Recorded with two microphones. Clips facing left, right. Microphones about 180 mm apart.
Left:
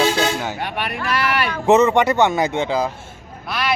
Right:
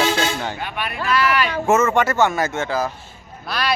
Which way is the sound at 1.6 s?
15° left (ahead or behind).